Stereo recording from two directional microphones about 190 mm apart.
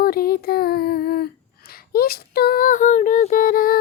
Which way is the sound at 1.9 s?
55° left (ahead or behind).